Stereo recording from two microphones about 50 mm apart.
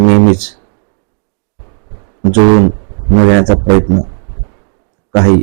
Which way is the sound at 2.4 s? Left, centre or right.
Left.